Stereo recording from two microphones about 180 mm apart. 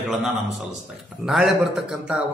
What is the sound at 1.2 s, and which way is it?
Speech, centre (ahead or behind).